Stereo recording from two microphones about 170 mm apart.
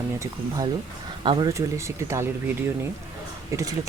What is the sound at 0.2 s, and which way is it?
A man's voice, 20° right (ahead or behind).